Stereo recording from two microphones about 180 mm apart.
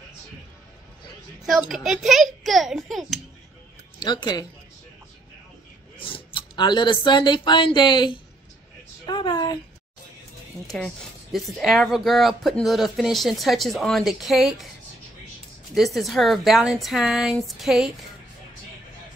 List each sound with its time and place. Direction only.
1.4 s speech: centre (ahead or behind)
4.0 s a woman's voice: 25° left (ahead or behind)
5.9 s speech: 30° left (ahead or behind)
9.0 s a sound: 25° left (ahead or behind)
11.3 s speech: centre (ahead or behind)
15.7 s speech: centre (ahead or behind)